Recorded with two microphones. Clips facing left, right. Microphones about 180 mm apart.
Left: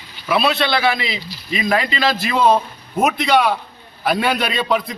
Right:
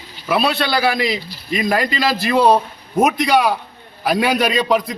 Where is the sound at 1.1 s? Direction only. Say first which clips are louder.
Right 2 dB; 45° right (ahead or behind).